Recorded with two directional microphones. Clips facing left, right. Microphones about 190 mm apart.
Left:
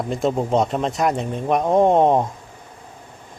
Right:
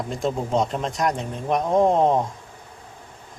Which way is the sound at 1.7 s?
30° left (ahead or behind).